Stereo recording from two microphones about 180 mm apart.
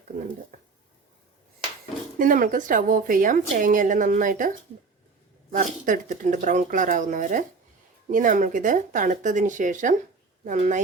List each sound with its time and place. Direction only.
0.1 s speech: 45° right (ahead or behind)
2.1 s speech: 50° right (ahead or behind)